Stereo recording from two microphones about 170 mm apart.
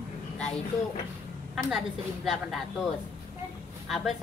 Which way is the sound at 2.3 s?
Centre (ahead or behind).